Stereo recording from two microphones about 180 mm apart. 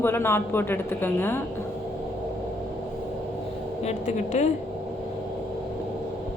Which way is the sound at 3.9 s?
40° left (ahead or behind).